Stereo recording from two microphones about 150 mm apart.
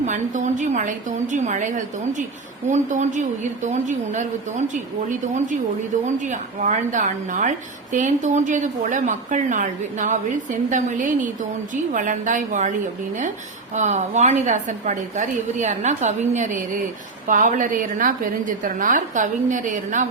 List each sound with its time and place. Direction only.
0.0 s a woman's voice: 55° right (ahead or behind)
13.7 s a woman's voice: 50° right (ahead or behind)